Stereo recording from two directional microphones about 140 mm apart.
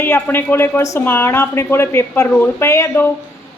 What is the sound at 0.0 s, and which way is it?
A woman's voice, 15° left (ahead or behind).